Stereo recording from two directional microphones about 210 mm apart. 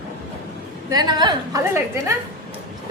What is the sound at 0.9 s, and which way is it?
A woman's voice, 20° right (ahead or behind).